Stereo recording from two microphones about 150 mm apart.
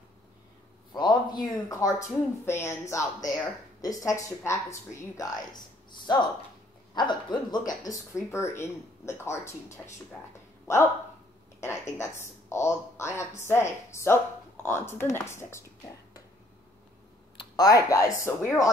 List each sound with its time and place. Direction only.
0.9 s speech: 30° left (ahead or behind)
12.0 s speech: 20° left (ahead or behind)
17.6 s speech: 25° left (ahead or behind)